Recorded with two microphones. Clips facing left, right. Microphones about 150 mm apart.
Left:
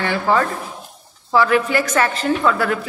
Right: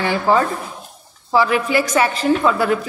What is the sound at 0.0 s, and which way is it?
A woman's voice, 15° right (ahead or behind).